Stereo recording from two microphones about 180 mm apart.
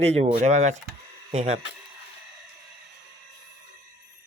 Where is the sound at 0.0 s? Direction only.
35° right (ahead or behind).